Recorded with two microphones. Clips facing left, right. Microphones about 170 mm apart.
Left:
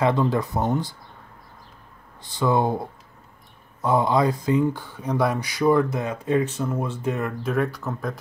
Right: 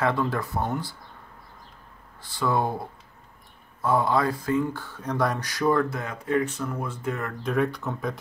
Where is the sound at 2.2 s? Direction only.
20° left (ahead or behind).